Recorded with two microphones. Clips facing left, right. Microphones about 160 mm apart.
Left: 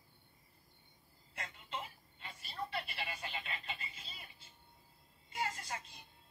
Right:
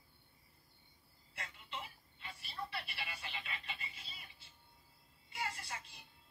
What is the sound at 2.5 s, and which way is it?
Telephone, 45° left (ahead or behind).